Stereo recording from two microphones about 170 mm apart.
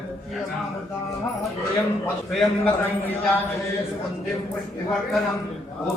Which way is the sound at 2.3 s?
Centre (ahead or behind).